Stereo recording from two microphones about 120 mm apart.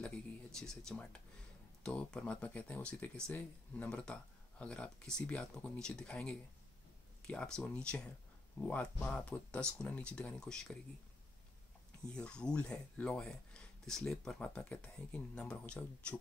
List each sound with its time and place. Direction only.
0.0 s speech: 5° left (ahead or behind)
12.1 s speech: 5° left (ahead or behind)